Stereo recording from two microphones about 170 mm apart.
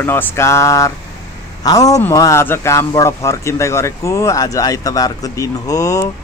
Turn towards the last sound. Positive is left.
turn(degrees=20)  # may be behind; listen again after turning